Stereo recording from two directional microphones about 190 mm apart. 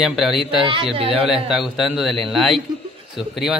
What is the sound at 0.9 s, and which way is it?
Speech, 30° right (ahead or behind).